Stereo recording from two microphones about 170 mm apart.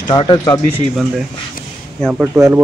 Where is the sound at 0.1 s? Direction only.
30° left (ahead or behind).